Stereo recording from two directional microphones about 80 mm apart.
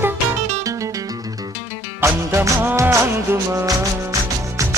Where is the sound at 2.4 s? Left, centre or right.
Right.